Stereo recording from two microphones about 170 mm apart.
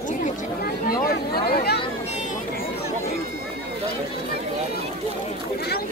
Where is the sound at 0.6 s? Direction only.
60° left (ahead or behind).